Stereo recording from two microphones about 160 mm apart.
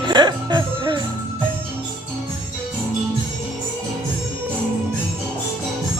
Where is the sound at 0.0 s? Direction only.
25° right (ahead or behind).